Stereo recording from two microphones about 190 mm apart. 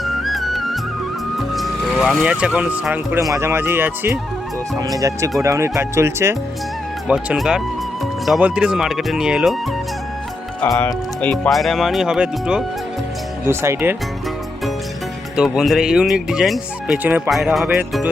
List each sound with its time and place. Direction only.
0.0 s music: centre (ahead or behind)
1.4 s speech: centre (ahead or behind)
10.6 s speech: 10° left (ahead or behind); by 13.9 s 15° right (ahead or behind)
15.4 s speech: centre (ahead or behind)